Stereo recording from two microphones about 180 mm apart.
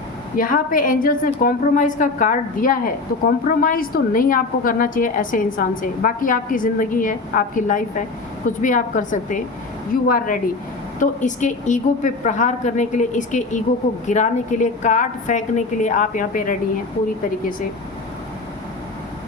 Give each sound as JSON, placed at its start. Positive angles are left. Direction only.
{"t": 0.3, "sound": "a woman's voice", "side_deg": 50}
{"t": 11.0, "sound": "a woman's voice", "side_deg": 45}